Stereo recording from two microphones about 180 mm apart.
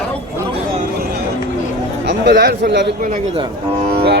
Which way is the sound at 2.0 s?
70° right (ahead or behind).